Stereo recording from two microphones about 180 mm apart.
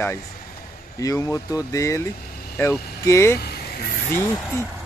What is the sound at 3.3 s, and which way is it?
Vehicle, 60° left (ahead or behind).